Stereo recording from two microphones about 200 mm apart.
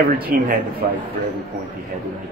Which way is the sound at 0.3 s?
45° right (ahead or behind).